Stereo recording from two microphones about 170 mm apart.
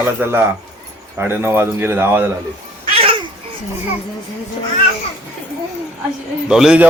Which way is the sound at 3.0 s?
30° right (ahead or behind).